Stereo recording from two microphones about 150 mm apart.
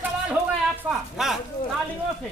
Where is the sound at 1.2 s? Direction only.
5° right (ahead or behind).